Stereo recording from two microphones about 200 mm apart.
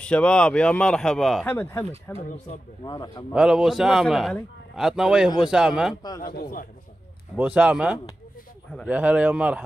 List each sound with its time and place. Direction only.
0.0 s speech: 5° left (ahead or behind)
2.1 s speech: 35° left (ahead or behind)
2.8 s a man's voice: 20° left (ahead or behind)
3.3 s speech: 5° right (ahead or behind)
6.0 s a man's voice: 20° left (ahead or behind)
6.3 s a man's voice: 45° left (ahead or behind)
7.3 s speech: 5° right (ahead or behind)